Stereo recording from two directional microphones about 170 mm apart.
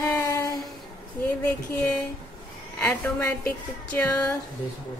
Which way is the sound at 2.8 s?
10° left (ahead or behind).